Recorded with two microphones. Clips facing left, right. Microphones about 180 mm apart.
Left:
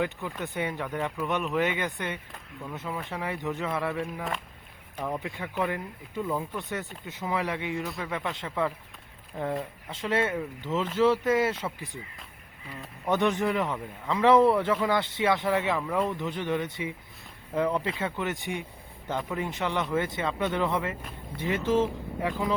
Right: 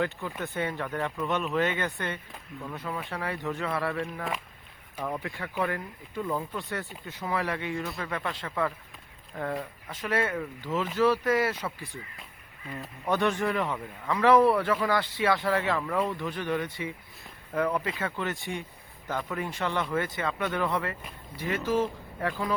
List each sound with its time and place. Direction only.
0.0 s speech: 15° left (ahead or behind)
2.3 s speech: centre (ahead or behind)
2.7 s speech: 20° left (ahead or behind)
5.1 s speech: 15° left (ahead or behind)
6.2 s speech: 5° left (ahead or behind)
6.6 s speech: 20° left (ahead or behind)
13.1 s speech: 20° left (ahead or behind)